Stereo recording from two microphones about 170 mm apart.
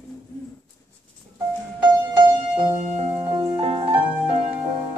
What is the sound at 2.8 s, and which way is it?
Music, 40° right (ahead or behind).